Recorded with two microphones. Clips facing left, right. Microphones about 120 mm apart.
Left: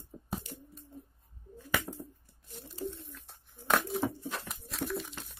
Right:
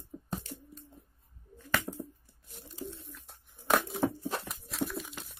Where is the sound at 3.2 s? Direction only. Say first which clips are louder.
Even; 5° right (ahead or behind).